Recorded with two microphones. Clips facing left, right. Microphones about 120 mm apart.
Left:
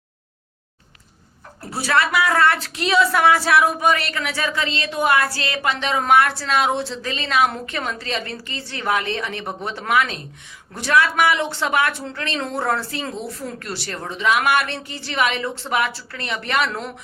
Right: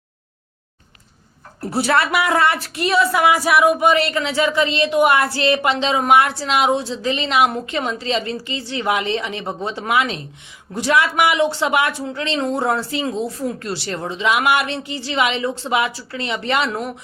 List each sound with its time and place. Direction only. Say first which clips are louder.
1.7 s speech: right 2 dB; 25° right (ahead or behind)